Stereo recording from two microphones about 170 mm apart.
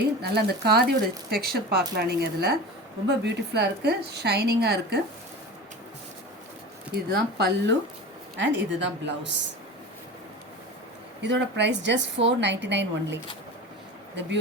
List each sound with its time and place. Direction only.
0.2 s speech: 70° right (ahead or behind)
6.9 s speech: 70° right (ahead or behind)
8.4 s a woman's voice: 90° right
11.2 s a woman's voice: 90° right